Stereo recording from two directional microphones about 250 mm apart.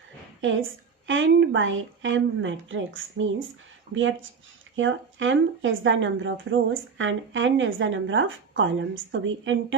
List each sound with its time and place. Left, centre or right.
1.0 s speech: right